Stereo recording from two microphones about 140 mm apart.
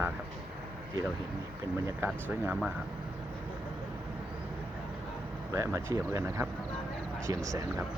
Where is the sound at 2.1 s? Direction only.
15° right (ahead or behind).